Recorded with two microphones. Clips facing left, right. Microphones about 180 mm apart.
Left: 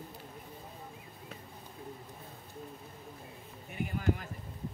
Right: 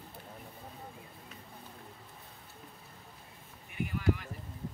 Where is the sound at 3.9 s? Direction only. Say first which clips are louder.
Right 1 dB; 40° left (ahead or behind).